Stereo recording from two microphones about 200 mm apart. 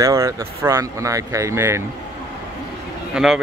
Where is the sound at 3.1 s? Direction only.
Centre (ahead or behind).